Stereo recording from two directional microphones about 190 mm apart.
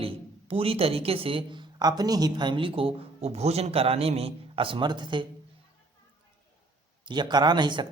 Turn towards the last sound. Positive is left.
turn(degrees=-25)  # may be behind; listen again after turning